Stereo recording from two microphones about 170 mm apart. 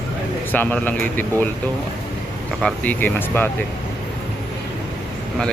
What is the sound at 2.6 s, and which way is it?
Speech, 10° left (ahead or behind).